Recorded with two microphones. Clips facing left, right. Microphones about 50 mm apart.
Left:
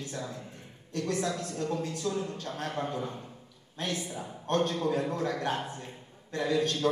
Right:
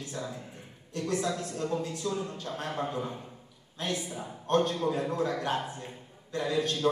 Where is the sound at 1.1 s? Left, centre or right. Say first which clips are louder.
Right 2 dB; right.